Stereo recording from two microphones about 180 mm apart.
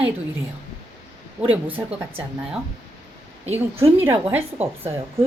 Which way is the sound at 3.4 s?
35° right (ahead or behind).